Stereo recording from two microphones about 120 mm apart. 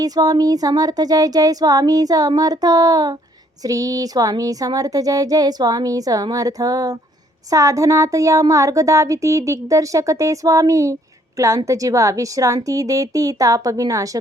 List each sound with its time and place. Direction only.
0.0 s speech: 30° right (ahead or behind)